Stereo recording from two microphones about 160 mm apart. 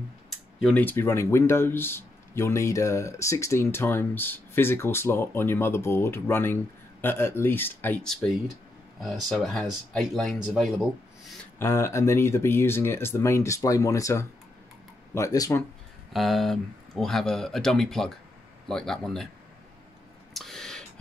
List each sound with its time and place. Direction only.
0.6 s speech: centre (ahead or behind)
0.8 s speech: 15° left (ahead or behind)
11.5 s speech: 15° left (ahead or behind)
16.1 s speech: centre (ahead or behind)
20.3 s a sound: centre (ahead or behind)